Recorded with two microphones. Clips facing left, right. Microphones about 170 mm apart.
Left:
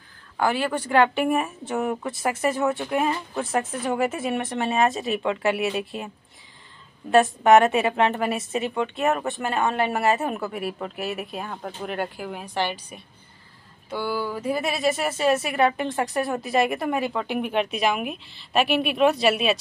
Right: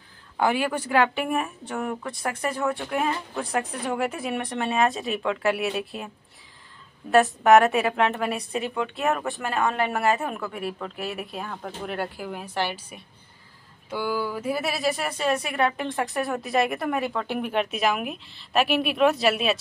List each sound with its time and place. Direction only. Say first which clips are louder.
0.4 s a woman's voice: even; 15° right (ahead or behind); by 6.0 s centre (ahead or behind)
7.1 s a woman's voice: left 1 dB; centre (ahead or behind)
13.8 s a sound: even; 10° right (ahead or behind)
14.2 s a woman's voice: left 1 dB; 10° right (ahead or behind)